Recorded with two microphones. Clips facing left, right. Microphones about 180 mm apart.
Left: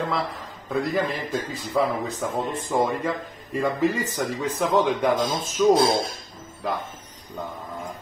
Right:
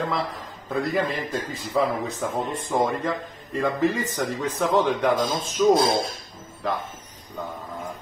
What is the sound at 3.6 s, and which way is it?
Speech, 10° left (ahead or behind).